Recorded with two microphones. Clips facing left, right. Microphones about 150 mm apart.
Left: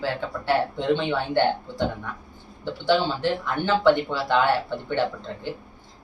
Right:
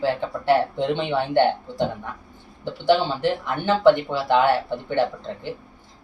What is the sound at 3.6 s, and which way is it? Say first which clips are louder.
Speech: right 3 dB; 15° right (ahead or behind).